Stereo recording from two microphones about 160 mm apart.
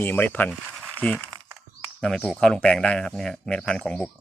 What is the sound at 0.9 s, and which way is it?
Speech, 10° left (ahead or behind).